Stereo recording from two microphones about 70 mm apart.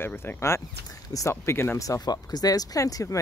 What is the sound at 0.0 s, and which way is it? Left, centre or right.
Speech, left.